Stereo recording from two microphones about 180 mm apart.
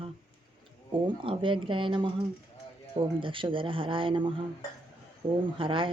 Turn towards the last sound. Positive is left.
turn(degrees=-30)  # may be behind; listen again after turning